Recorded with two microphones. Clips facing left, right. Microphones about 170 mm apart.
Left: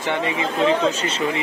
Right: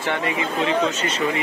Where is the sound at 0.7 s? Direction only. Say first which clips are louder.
Left 2 dB; 35° left (ahead or behind).